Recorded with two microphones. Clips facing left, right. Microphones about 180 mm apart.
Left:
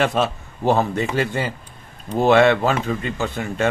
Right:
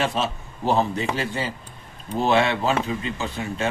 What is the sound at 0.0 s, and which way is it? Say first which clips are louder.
A man's voice: left 5 dB; 55° left (ahead or behind).